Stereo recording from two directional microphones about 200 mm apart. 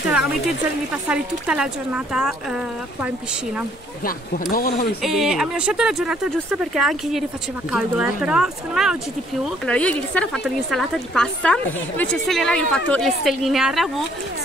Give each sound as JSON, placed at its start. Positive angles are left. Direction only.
{"t": 1.0, "sound": "speech", "side_deg": -5}
{"t": 4.0, "sound": "speech", "side_deg": 45}
{"t": 5.0, "sound": "speech", "side_deg": 0}